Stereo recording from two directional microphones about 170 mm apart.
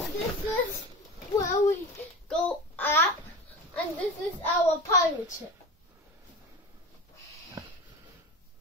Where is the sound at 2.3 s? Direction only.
10° left (ahead or behind).